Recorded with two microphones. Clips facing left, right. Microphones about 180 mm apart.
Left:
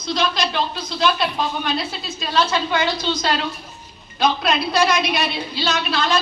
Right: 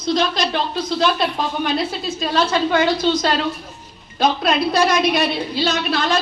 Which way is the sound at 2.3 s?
50° right (ahead or behind).